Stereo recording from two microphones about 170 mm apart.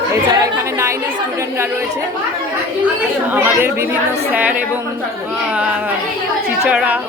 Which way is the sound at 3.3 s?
15° right (ahead or behind).